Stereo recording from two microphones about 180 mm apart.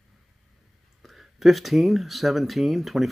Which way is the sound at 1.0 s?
Centre (ahead or behind).